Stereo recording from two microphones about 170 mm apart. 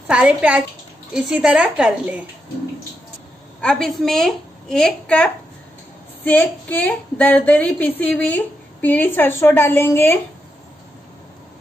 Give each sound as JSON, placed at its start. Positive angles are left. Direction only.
{"t": 0.0, "sound": "a woman's voice", "side_deg": -5}
{"t": 3.6, "sound": "a woman's voice", "side_deg": 5}